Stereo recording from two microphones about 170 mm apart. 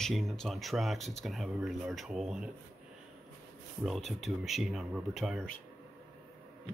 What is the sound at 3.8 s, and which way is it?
Speech, centre (ahead or behind).